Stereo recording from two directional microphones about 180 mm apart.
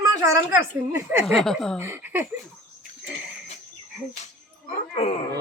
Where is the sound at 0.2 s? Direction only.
15° right (ahead or behind).